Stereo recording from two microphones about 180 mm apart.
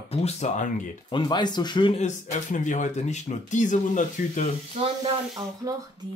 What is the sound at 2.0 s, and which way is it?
Speech, 45° left (ahead or behind).